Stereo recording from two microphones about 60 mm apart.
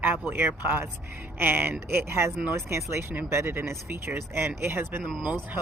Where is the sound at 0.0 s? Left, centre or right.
Right.